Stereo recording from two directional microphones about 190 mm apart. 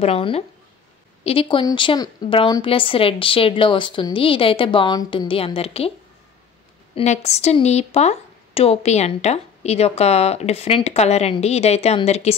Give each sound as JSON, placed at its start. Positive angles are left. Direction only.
{"t": 0.0, "sound": "a woman's voice", "side_deg": 30}
{"t": 7.0, "sound": "a woman's voice", "side_deg": 35}